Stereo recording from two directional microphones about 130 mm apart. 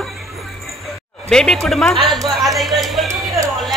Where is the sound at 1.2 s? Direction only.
5° left (ahead or behind).